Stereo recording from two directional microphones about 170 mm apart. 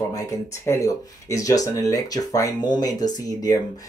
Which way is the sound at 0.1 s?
20° left (ahead or behind).